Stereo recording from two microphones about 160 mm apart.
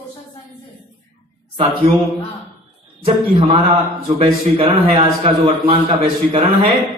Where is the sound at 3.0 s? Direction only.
30° right (ahead or behind).